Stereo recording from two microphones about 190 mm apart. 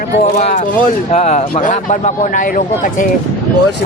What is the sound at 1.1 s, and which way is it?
Speech, 35° left (ahead or behind).